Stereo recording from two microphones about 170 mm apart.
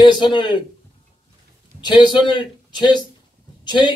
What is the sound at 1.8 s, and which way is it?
A man's voice, 25° left (ahead or behind).